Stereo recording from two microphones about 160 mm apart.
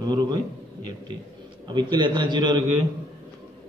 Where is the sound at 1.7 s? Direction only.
30° right (ahead or behind).